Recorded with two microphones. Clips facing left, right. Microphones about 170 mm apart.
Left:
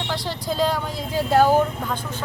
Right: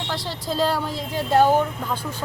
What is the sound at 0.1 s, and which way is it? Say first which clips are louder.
A woman's voice: even; centre (ahead or behind).